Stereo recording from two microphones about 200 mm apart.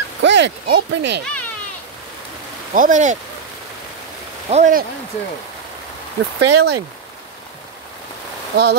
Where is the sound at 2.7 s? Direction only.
40° right (ahead or behind).